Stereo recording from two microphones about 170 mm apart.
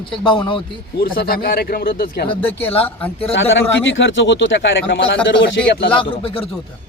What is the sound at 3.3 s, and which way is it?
A man's voice, 90° left.